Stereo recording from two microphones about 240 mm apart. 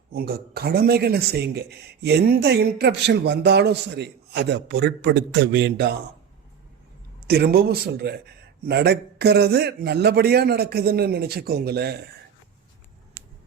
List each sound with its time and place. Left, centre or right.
0.1 s a man's voice: right
7.3 s a man's voice: right
13.2 s a sound: centre